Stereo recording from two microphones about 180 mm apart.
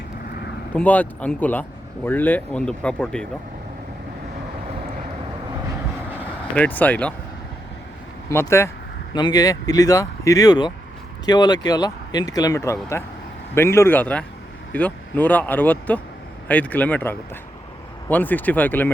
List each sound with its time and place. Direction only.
0.7 s speech: 10° left (ahead or behind)
6.6 s speech: 10° left (ahead or behind)
8.3 s speech: 15° left (ahead or behind)